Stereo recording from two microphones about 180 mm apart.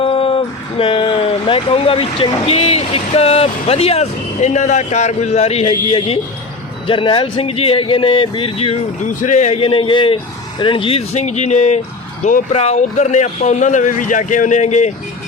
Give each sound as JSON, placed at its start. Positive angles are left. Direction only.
{"t": 0.0, "sound": "speech", "side_deg": 30}